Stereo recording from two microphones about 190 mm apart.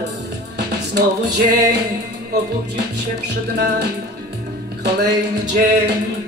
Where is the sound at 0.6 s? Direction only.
60° right (ahead or behind).